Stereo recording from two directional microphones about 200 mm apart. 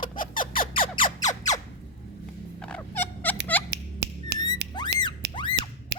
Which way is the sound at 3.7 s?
55° right (ahead or behind).